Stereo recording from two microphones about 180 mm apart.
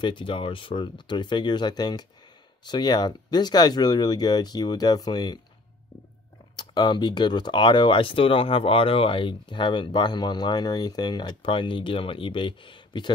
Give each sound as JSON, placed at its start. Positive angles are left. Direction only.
{"t": 0.0, "sound": "speech", "side_deg": 25}
{"t": 6.5, "sound": "speech", "side_deg": 25}